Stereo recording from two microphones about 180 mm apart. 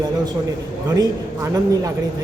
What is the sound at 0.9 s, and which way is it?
A man's voice, 20° right (ahead or behind).